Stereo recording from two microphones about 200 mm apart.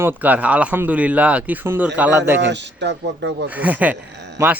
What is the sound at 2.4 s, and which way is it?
Speech, 60° right (ahead or behind).